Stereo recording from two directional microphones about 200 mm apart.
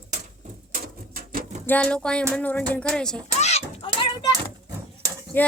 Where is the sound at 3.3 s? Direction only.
35° left (ahead or behind).